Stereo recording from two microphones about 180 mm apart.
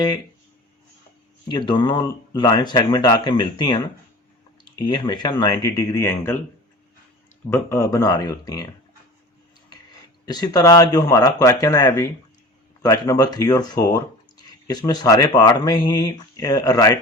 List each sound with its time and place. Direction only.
1.5 s speech: 25° left (ahead or behind)
7.5 s speech: 15° left (ahead or behind)
10.2 s speech: 20° left (ahead or behind)